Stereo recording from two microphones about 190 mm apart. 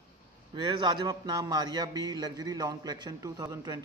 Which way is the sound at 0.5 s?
25° right (ahead or behind).